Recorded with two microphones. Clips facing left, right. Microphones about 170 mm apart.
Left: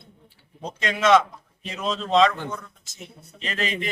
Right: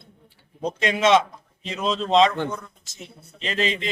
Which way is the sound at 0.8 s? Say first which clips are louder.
Even; 25° right (ahead or behind).